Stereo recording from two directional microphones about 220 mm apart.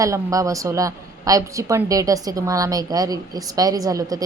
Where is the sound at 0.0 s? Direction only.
15° right (ahead or behind).